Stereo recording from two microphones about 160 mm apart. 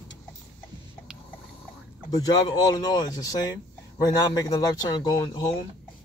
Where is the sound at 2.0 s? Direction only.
25° left (ahead or behind).